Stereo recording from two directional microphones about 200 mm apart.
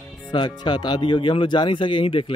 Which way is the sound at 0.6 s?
20° left (ahead or behind).